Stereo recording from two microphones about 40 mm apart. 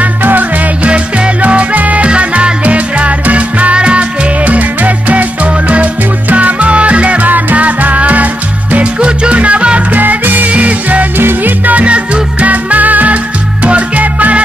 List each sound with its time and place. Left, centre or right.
0.0 s music: right
0.8 s music: right
4.5 s music: right
8.7 s salsa music: right
9.9 s music: right
11.1 s music: right
11.6 s music: right